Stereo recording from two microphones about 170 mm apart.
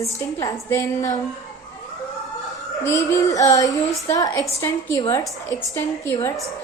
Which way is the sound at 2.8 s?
15° left (ahead or behind).